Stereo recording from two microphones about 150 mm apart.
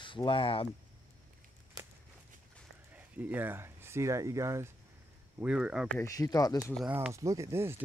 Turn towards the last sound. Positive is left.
turn(degrees=-20)  # may be behind; listen again after turning